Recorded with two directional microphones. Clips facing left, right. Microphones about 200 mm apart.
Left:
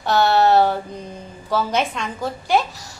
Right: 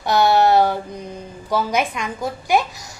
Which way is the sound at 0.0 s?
15° right (ahead or behind).